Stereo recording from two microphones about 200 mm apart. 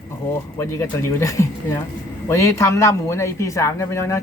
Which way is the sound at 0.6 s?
15° left (ahead or behind).